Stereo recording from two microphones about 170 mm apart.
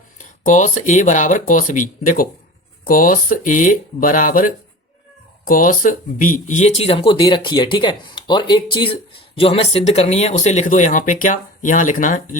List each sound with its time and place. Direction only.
0.2 s speech: 45° left (ahead or behind)